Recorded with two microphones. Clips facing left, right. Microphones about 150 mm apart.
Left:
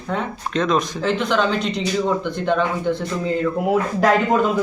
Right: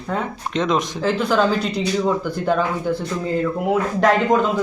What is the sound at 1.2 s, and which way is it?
Speech, 5° right (ahead or behind).